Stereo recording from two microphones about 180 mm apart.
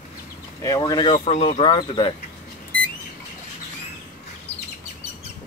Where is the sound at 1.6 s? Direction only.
25° left (ahead or behind).